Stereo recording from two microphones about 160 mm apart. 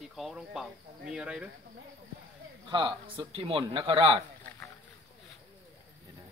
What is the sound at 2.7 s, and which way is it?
A man's voice, 30° right (ahead or behind).